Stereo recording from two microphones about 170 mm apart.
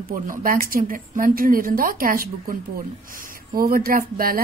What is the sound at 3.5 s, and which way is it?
Speech, 60° right (ahead or behind).